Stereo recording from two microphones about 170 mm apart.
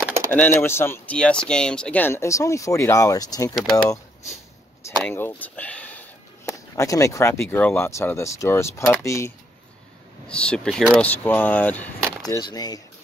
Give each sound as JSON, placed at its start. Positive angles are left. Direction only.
{"t": 0.3, "sound": "speech", "side_deg": 15}
{"t": 5.0, "sound": "speech", "side_deg": 10}
{"t": 6.4, "sound": "speech", "side_deg": 20}
{"t": 10.2, "sound": "speech", "side_deg": 5}
{"t": 12.4, "sound": "speech", "side_deg": 25}